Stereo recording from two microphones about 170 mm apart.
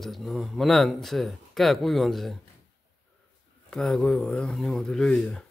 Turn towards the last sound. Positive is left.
turn(degrees=5)  # may be behind; listen again after turning